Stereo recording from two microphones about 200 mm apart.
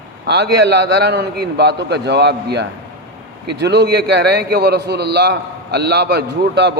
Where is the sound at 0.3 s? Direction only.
55° right (ahead or behind).